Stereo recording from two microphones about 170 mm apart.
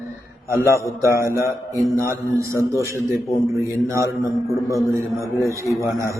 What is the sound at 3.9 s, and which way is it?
Mantra, 15° right (ahead or behind).